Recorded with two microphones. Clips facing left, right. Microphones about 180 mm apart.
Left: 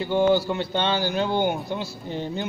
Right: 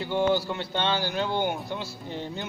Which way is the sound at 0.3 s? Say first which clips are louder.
Left 5 dB; 10° left (ahead or behind).